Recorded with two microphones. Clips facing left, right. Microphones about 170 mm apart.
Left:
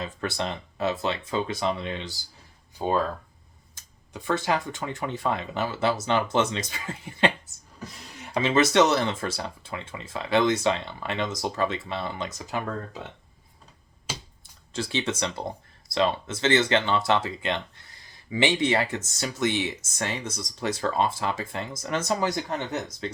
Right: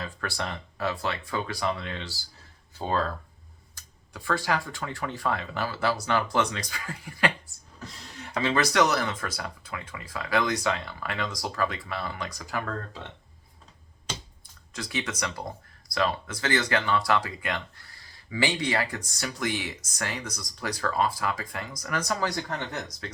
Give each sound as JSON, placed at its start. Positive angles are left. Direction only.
{"t": 0.0, "sound": "speech", "side_deg": 20}
{"t": 14.1, "sound": "computer keyboard", "side_deg": 5}
{"t": 14.7, "sound": "speech", "side_deg": 30}